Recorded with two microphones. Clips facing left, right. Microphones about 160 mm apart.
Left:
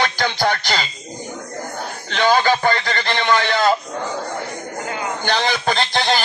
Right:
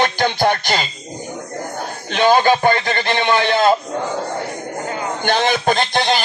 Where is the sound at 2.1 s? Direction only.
20° right (ahead or behind).